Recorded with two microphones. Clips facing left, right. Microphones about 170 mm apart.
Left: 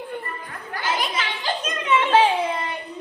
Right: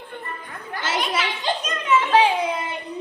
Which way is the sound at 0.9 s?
85° right.